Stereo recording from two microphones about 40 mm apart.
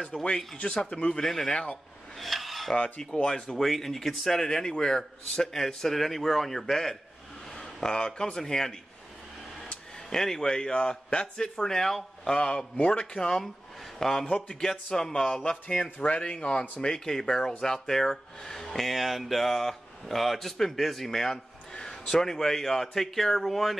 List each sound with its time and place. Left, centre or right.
0.1 s speech: centre
0.8 s speech: left
1.2 s speech: centre
2.1 s a sound: centre
3.2 s speech: left
3.6 s speech: centre
7.9 s speech: left
10.0 s speech: centre
11.6 s speech: centre
12.4 s speech: left
13.9 s speech: centre
15.4 s speech: left
16.8 s speech: centre